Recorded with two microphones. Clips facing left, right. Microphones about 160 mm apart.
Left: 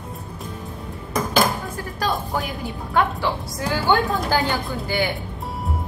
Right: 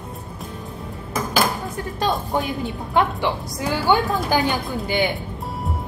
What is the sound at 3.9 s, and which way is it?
A woman's voice, 15° right (ahead or behind).